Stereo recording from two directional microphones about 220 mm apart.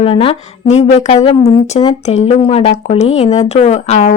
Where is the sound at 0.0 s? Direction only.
25° left (ahead or behind).